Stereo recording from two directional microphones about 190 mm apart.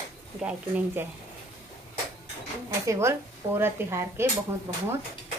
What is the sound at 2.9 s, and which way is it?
Speech, 15° right (ahead or behind).